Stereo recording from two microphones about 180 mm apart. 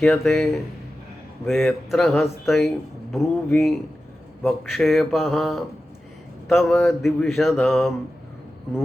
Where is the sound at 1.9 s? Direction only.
Centre (ahead or behind).